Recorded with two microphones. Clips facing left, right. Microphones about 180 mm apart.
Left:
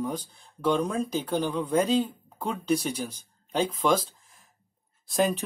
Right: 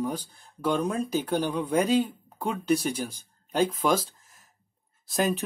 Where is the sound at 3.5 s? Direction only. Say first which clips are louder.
Right 1 dB; 5° right (ahead or behind).